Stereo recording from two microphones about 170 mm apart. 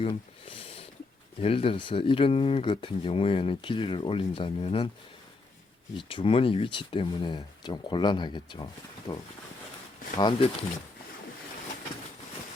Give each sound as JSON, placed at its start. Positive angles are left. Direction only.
{"t": 0.0, "sound": "a sound", "side_deg": 30}
{"t": 1.4, "sound": "speech", "side_deg": 35}
{"t": 6.0, "sound": "speech", "side_deg": 30}
{"t": 10.2, "sound": "speech", "side_deg": 25}